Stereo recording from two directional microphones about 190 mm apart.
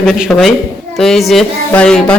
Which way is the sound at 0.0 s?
Centre (ahead or behind).